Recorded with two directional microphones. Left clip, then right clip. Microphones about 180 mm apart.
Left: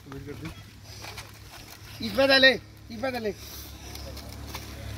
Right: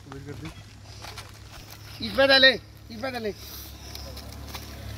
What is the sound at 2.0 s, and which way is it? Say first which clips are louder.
Speech: right 2 dB; 30° left (ahead or behind).